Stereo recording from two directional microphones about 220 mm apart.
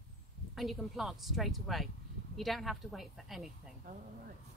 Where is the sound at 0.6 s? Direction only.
Centre (ahead or behind).